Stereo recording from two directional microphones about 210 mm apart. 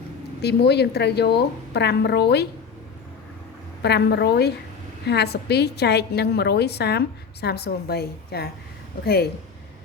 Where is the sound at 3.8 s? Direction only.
50° left (ahead or behind).